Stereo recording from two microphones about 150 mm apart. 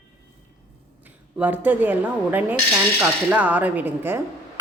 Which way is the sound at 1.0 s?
10° right (ahead or behind).